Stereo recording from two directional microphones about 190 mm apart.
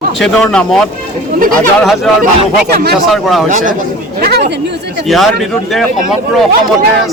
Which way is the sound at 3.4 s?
40° right (ahead or behind).